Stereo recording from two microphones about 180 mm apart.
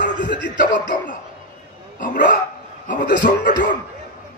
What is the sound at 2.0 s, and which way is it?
A man's voice, 45° left (ahead or behind).